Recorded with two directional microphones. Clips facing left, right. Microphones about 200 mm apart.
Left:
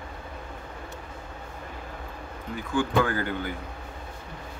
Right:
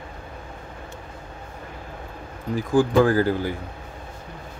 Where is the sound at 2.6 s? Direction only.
35° right (ahead or behind).